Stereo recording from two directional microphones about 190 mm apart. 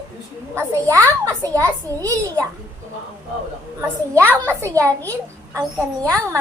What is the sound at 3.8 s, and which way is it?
A child's voice, 15° right (ahead or behind).